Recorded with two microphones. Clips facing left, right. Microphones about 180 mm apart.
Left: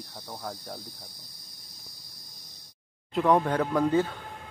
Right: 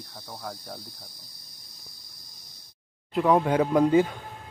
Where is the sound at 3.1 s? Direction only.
5° right (ahead or behind).